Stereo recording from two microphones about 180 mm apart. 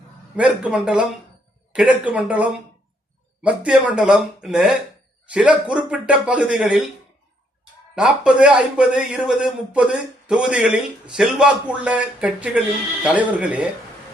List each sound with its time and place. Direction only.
0.3 s a man's voice: 5° right (ahead or behind)
7.9 s a man's voice: 5° right (ahead or behind)